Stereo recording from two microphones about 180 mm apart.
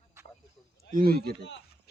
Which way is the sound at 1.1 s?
60° right (ahead or behind).